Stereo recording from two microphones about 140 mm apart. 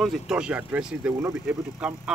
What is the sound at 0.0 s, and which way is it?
Speech, 5° right (ahead or behind).